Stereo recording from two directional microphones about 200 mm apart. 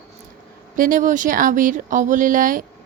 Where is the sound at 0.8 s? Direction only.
40° right (ahead or behind).